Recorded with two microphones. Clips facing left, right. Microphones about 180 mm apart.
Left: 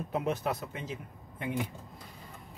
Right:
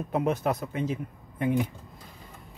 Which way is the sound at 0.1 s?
55° right (ahead or behind).